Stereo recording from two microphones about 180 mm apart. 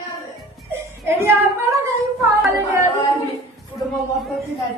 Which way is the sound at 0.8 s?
10° right (ahead or behind).